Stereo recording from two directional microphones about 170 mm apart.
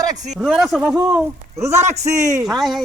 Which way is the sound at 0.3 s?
Centre (ahead or behind).